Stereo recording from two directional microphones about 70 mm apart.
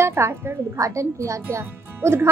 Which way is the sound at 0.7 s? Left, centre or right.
Right.